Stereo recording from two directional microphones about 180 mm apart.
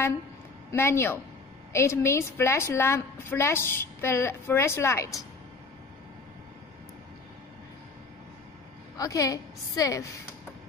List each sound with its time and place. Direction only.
0.7 s a woman's voice: 15° left (ahead or behind)
8.9 s a woman's voice: 20° left (ahead or behind)